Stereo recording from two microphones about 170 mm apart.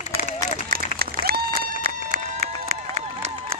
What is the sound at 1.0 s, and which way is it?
Run, 60° right (ahead or behind).